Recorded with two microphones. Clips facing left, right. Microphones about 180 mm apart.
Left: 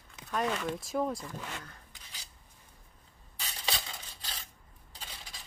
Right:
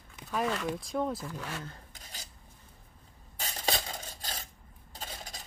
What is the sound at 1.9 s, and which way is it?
Dishes, 45° right (ahead or behind).